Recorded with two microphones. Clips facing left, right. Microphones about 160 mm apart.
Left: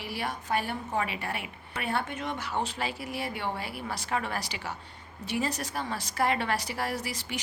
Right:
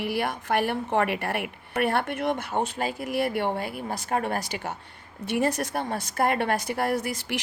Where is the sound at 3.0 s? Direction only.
65° right (ahead or behind).